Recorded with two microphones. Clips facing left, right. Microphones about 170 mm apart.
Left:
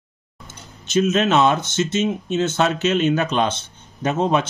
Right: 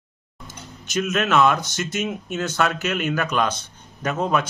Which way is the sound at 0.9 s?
25° left (ahead or behind).